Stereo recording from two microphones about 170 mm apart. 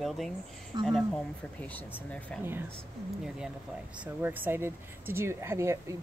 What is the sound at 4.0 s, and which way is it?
Speech, 10° right (ahead or behind).